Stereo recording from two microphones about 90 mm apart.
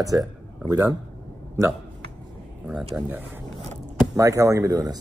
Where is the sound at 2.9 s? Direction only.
20° right (ahead or behind).